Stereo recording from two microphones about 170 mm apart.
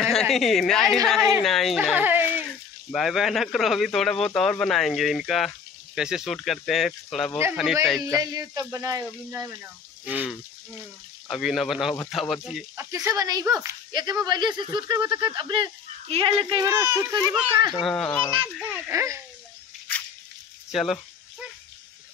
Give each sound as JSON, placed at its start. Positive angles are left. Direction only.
{"t": 0.0, "sound": "a woman's voice", "side_deg": 0}
{"t": 1.8, "sound": "speech", "side_deg": -10}
{"t": 2.9, "sound": "speech", "side_deg": 0}
{"t": 8.2, "sound": "speech", "side_deg": -20}
{"t": 12.7, "sound": "speech", "side_deg": -15}
{"t": 16.6, "sound": "speech", "side_deg": -15}
{"t": 17.8, "sound": "speech", "side_deg": 5}
{"t": 18.4, "sound": "speech", "side_deg": -10}
{"t": 20.7, "sound": "a sound", "side_deg": 0}